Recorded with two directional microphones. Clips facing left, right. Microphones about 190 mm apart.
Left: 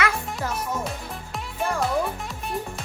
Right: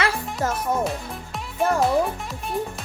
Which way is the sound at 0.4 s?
45° right (ahead or behind).